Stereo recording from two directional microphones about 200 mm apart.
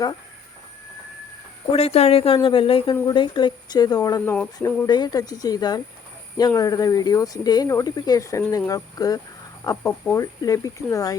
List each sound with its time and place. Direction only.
1.7 s speech: 30° left (ahead or behind)